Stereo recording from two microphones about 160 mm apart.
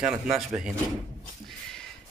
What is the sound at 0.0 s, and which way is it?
Speech, 5° right (ahead or behind).